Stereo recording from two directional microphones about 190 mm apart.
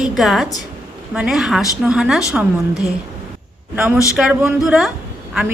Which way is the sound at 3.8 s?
5° right (ahead or behind).